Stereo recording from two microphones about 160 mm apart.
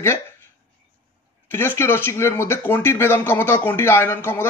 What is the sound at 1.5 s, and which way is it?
Speech, 15° left (ahead or behind).